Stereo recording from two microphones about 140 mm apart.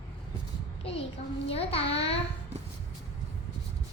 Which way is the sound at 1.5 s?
45° left (ahead or behind).